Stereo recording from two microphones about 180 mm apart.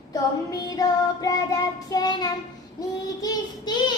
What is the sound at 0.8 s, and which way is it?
Child singing, 20° left (ahead or behind).